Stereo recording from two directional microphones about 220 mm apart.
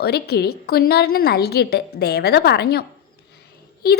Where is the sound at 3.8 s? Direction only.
45° left (ahead or behind).